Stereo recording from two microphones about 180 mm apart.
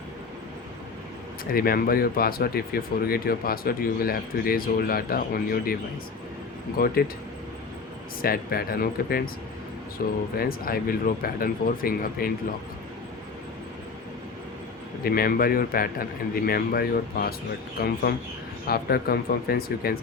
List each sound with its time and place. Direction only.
1.5 s speech: 55° left (ahead or behind)
6.7 s speech: 55° left (ahead or behind)
8.2 s speech: 55° left (ahead or behind)
15.0 s speech: 55° left (ahead or behind)